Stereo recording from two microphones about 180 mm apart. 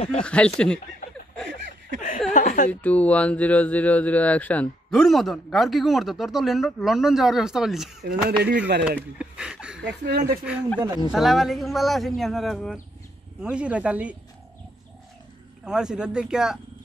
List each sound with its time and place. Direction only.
0.2 s speech: 5° left (ahead or behind)
2.0 s speech: 45° left (ahead or behind)
2.7 s speech: 10° left (ahead or behind)
8.0 s speech: 65° right (ahead or behind)
8.8 s speech: 5° right (ahead or behind)
10.0 s speech: 60° right (ahead or behind)
11.1 s speech: centre (ahead or behind)
15.6 s speech: 5° right (ahead or behind)